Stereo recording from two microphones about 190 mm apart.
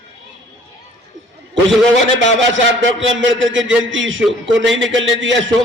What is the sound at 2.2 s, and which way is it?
A man's voice, 75° right (ahead or behind).